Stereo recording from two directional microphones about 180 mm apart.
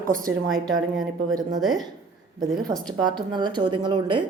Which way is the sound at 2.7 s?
20° right (ahead or behind).